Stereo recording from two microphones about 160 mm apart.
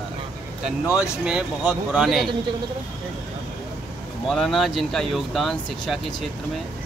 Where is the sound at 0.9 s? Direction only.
5° right (ahead or behind).